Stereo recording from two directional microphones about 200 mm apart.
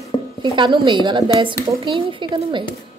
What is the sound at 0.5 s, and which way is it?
A woman's voice, 25° right (ahead or behind).